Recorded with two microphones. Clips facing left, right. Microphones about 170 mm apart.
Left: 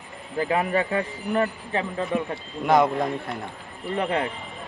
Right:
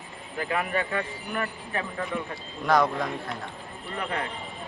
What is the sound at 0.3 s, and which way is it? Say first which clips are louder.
Speech: left 5 dB; 30° left (ahead or behind).